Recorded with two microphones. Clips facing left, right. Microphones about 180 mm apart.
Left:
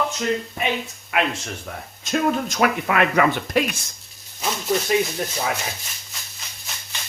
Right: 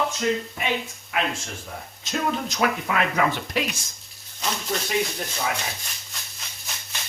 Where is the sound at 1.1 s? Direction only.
65° left (ahead or behind).